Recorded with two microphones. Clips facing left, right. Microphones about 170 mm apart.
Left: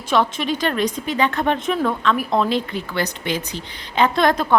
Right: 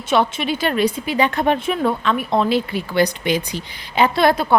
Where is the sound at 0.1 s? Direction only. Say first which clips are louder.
Right 1 dB; 5° right (ahead or behind).